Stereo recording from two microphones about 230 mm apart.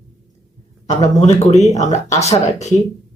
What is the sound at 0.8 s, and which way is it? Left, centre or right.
Speech, left.